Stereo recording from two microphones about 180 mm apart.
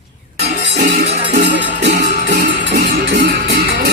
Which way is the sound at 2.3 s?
55° right (ahead or behind).